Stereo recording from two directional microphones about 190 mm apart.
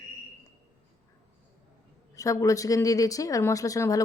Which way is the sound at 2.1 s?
15° left (ahead or behind).